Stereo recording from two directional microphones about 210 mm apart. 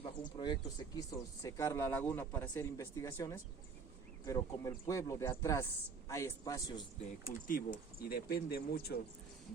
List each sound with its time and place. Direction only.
0.0 s speech: 20° left (ahead or behind)
7.0 s speech: 35° left (ahead or behind)